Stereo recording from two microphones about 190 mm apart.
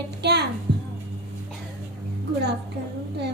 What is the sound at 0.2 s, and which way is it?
Music, 60° right (ahead or behind).